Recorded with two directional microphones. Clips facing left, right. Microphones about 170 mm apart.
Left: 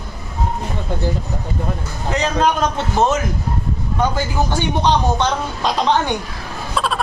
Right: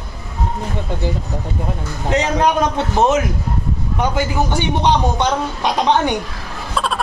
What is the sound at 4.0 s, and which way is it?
A man's voice, 15° right (ahead or behind).